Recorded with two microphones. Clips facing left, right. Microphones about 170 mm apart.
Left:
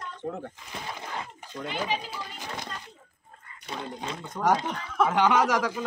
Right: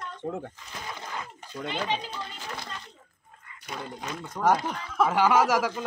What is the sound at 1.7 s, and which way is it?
Speech, 10° left (ahead or behind).